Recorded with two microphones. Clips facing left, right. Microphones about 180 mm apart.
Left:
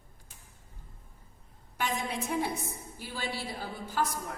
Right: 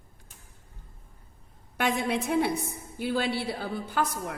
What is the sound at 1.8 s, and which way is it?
A woman's voice, 65° right (ahead or behind).